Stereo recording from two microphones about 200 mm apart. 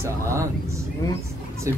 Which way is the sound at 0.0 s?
15° right (ahead or behind).